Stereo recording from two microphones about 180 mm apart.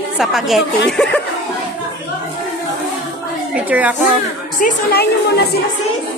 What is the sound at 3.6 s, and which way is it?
Speech, 10° right (ahead or behind).